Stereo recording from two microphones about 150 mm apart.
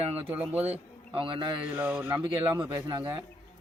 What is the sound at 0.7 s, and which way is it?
Speech, 35° right (ahead or behind).